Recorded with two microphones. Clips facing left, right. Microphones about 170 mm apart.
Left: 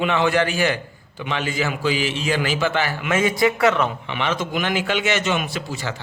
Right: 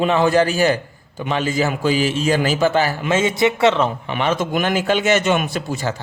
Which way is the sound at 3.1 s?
25° right (ahead or behind).